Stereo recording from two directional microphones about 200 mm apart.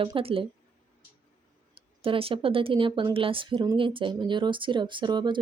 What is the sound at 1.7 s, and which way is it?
Speech, 30° right (ahead or behind).